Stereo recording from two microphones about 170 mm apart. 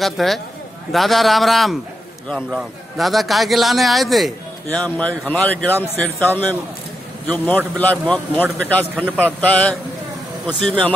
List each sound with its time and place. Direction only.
0.0 s a man's voice: centre (ahead or behind)
8.9 s a man's voice: 10° right (ahead or behind)
9.2 s a man's voice: 10° left (ahead or behind)